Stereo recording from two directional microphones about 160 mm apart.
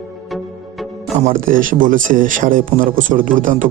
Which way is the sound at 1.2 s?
55° right (ahead or behind).